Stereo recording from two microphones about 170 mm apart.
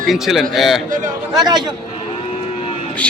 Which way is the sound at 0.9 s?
50° right (ahead or behind).